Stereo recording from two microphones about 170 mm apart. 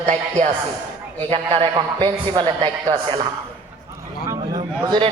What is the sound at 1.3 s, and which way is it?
A man's voice, 30° right (ahead or behind).